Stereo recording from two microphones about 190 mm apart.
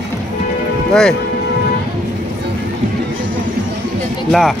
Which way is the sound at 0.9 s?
5° left (ahead or behind).